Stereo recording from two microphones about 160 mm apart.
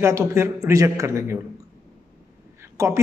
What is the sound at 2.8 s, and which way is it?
Speech, 15° right (ahead or behind).